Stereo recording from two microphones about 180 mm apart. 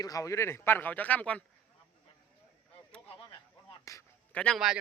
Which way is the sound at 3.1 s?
30° left (ahead or behind).